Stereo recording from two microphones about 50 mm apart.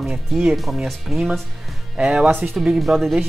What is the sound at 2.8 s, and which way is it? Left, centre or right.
Speech, centre.